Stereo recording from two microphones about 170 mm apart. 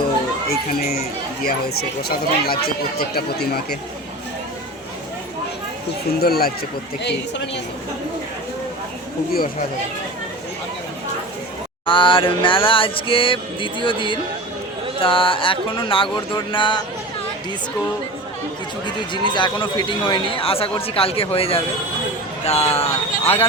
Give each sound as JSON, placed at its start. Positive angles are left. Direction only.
{"t": 0.4, "sound": "speech", "side_deg": 65}
{"t": 6.1, "sound": "speech", "side_deg": 65}
{"t": 7.0, "sound": "speech", "side_deg": 90}
{"t": 9.3, "sound": "speech", "side_deg": 55}
{"t": 11.9, "sound": "a sound", "side_deg": 30}
{"t": 16.1, "sound": "speech", "side_deg": 30}
{"t": 19.3, "sound": "a sound", "side_deg": 25}